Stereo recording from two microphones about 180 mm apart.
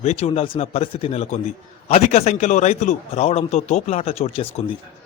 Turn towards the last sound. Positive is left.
turn(degrees=35)  # may be behind; listen again after turning